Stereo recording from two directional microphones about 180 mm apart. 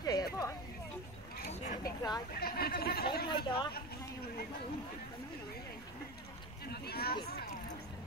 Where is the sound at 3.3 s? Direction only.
25° left (ahead or behind).